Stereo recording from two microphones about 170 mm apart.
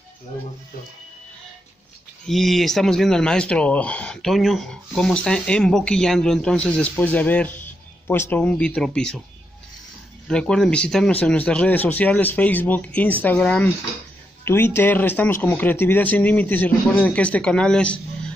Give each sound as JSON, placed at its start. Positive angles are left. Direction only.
{"t": 2.2, "sound": "speech", "side_deg": 0}
{"t": 10.2, "sound": "speech", "side_deg": 5}